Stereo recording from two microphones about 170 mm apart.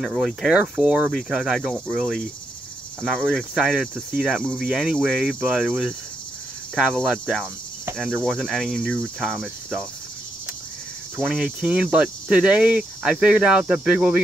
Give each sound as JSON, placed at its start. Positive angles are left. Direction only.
{"t": 0.0, "sound": "cricket", "side_deg": 0}
{"t": 4.4, "sound": "cricket", "side_deg": 5}
{"t": 4.6, "sound": "cricket", "side_deg": -5}
{"t": 7.1, "sound": "cricket", "side_deg": 0}
{"t": 11.1, "sound": "cricket", "side_deg": -5}